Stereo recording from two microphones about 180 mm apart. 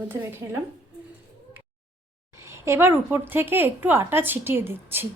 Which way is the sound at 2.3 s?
15° right (ahead or behind).